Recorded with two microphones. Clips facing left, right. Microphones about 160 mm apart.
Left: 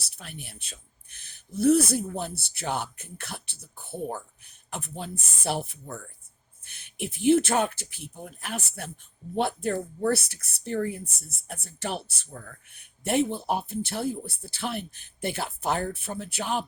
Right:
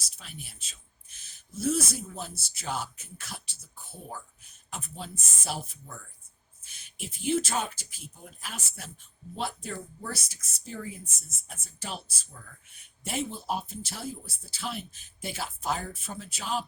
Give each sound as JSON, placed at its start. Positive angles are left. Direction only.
{"t": 0.0, "sound": "speech", "side_deg": 60}